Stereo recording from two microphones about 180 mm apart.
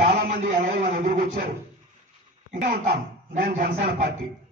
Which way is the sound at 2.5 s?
45° right (ahead or behind).